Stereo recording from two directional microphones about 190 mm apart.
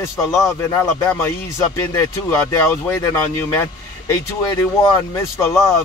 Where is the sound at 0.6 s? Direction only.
15° left (ahead or behind).